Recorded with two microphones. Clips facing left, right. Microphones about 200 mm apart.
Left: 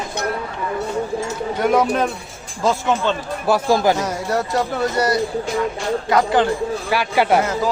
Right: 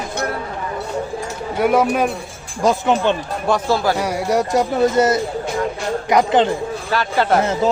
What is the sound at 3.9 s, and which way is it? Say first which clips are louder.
Speech: right 3 dB; 10° right (ahead or behind).